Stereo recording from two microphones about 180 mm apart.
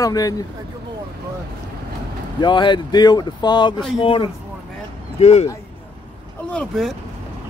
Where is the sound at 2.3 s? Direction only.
25° left (ahead or behind).